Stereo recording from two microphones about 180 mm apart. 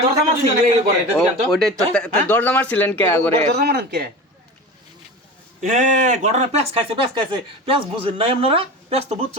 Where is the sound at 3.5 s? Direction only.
65° right (ahead or behind).